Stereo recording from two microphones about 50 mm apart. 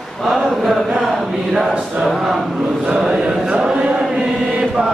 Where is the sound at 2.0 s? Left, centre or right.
Centre.